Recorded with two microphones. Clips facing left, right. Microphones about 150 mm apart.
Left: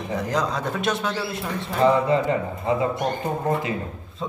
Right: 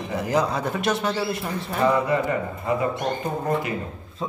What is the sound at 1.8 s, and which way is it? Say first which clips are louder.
Speech: left 2 dB; 20° left (ahead or behind).